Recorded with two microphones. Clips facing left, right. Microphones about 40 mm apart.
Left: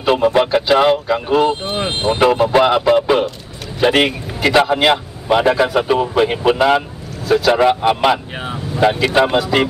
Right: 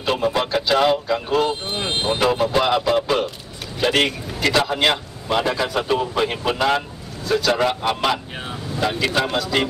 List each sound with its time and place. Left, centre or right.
0.0 s speech: centre